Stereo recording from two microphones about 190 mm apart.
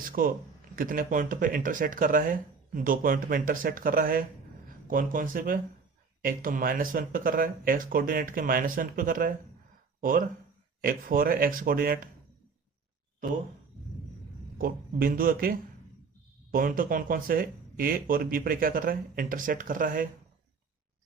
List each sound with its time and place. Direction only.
0.0 s speech: 50° right (ahead or behind)
14.6 s speech: 50° right (ahead or behind)